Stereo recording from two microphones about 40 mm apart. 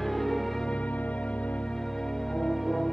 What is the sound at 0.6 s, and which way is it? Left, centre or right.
Music, left.